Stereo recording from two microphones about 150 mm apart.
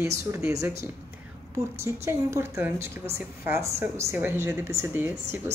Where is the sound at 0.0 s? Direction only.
20° right (ahead or behind).